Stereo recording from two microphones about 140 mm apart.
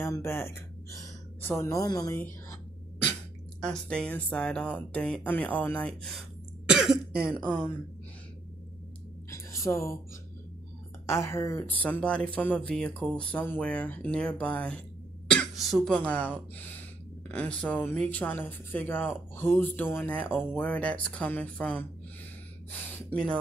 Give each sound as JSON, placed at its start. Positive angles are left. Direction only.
{"t": 0.0, "sound": "a woman's voice", "side_deg": 20}
{"t": 3.7, "sound": "speech", "side_deg": 5}
{"t": 6.7, "sound": "cough", "side_deg": -5}
{"t": 7.2, "sound": "speech", "side_deg": -10}
{"t": 9.3, "sound": "a sound", "side_deg": 20}
{"t": 11.1, "sound": "speech", "side_deg": 20}